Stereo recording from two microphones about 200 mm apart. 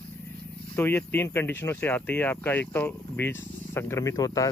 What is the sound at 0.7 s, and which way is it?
Speech, 10° left (ahead or behind).